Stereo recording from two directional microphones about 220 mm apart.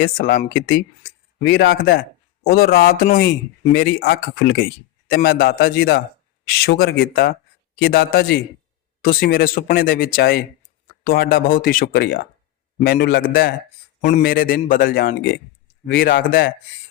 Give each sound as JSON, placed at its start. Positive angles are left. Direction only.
{"t": 0.0, "sound": "a man's voice", "side_deg": 40}